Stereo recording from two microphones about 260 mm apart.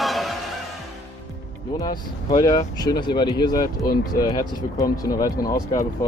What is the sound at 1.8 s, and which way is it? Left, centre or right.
Speech, centre.